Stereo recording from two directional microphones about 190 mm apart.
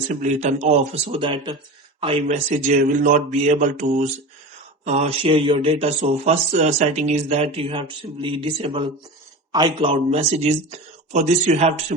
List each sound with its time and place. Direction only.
0.1 s speech: 40° right (ahead or behind)